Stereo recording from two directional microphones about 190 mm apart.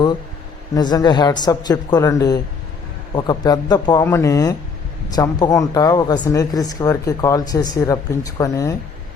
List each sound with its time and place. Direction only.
0.7 s speech: 20° left (ahead or behind)